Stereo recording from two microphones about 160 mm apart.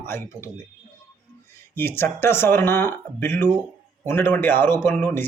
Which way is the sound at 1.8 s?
15° left (ahead or behind).